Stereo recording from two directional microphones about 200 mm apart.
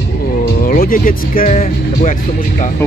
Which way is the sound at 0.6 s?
45° left (ahead or behind).